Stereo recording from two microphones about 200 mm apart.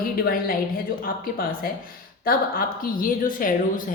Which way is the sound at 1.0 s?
45° left (ahead or behind).